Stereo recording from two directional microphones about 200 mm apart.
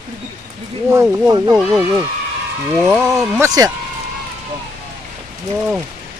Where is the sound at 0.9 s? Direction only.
15° right (ahead or behind).